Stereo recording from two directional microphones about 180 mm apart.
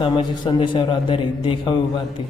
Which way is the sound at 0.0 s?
25° left (ahead or behind).